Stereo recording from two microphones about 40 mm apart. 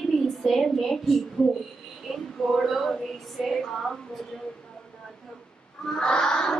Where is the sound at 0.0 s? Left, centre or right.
Centre.